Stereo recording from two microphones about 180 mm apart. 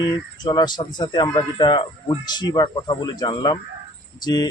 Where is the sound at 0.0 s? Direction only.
25° left (ahead or behind).